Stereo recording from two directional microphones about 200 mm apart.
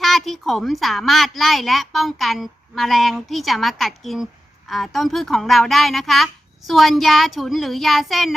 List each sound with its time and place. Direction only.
0.0 s a woman's voice: centre (ahead or behind)